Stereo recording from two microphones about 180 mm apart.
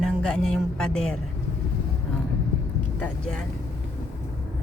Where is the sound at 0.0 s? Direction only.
5° left (ahead or behind).